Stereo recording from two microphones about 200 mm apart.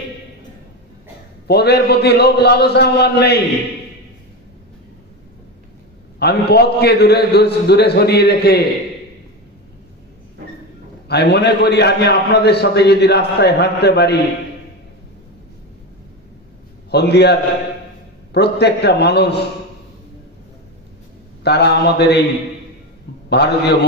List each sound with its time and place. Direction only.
1.5 s a man's voice: 55° left (ahead or behind)
6.1 s a man's voice: 55° left (ahead or behind)
11.1 s a man's voice: 55° left (ahead or behind)
16.9 s a man's voice: 55° left (ahead or behind)
21.5 s a man's voice: 55° left (ahead or behind)
23.3 s a man's voice: 55° left (ahead or behind)